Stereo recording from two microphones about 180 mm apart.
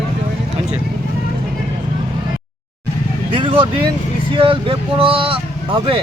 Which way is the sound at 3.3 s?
30° right (ahead or behind).